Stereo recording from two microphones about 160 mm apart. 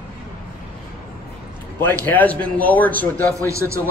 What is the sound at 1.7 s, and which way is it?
Speech, 10° left (ahead or behind).